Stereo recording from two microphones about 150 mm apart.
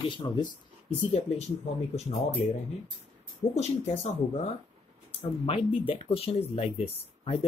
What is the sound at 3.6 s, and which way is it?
Speech, 45° left (ahead or behind).